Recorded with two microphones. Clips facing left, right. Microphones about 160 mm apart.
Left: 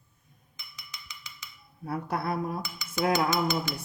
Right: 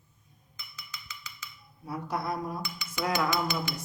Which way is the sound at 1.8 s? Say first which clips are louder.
Left 2 dB; 60° left (ahead or behind).